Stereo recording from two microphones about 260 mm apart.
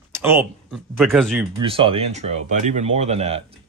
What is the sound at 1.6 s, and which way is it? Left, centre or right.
Speech, right.